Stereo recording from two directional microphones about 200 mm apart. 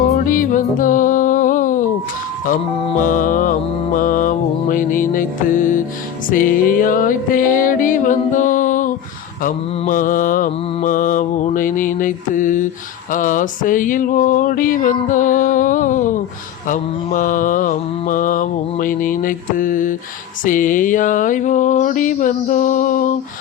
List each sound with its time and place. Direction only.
0.3 s music: 40° left (ahead or behind)
2.5 s mantra: 40° left (ahead or behind)
6.3 s music: 45° left (ahead or behind)
9.4 s mantra: 40° left (ahead or behind)